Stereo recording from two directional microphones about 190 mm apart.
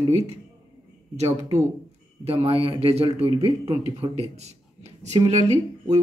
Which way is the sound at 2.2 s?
30° right (ahead or behind).